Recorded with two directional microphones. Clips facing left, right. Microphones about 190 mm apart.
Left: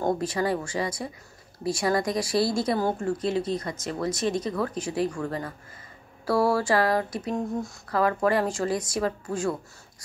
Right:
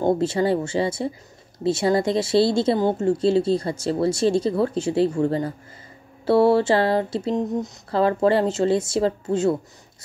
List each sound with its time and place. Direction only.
0.0 s speech: 25° right (ahead or behind)